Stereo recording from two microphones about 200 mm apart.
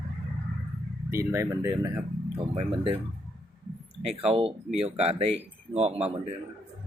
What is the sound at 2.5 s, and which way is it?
Speech, 25° right (ahead or behind).